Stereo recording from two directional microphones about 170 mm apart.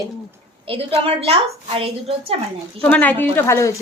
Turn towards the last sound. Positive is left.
turn(degrees=15)  # may be behind; listen again after turning